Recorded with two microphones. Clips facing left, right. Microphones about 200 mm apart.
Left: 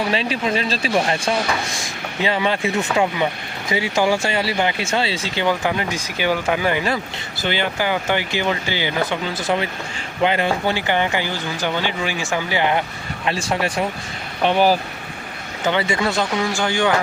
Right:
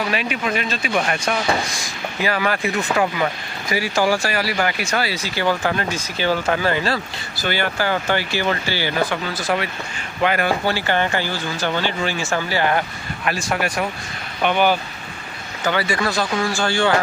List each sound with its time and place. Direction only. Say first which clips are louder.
0.1 s speech: left 2 dB; 30° left (ahead or behind)